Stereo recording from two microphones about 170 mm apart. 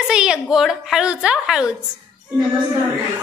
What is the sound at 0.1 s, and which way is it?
A woman's voice, 5° right (ahead or behind).